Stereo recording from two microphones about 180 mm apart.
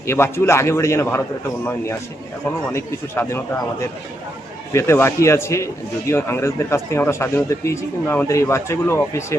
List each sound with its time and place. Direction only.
0.0 s speech: 15° left (ahead or behind)